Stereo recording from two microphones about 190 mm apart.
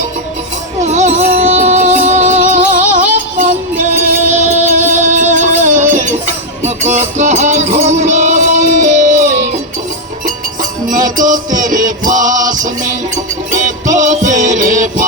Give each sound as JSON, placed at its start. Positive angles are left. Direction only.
{"t": 0.9, "sound": "music", "side_deg": -40}
{"t": 10.8, "sound": "music", "side_deg": -45}